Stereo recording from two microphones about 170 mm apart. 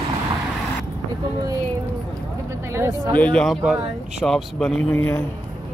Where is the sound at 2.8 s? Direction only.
15° right (ahead or behind).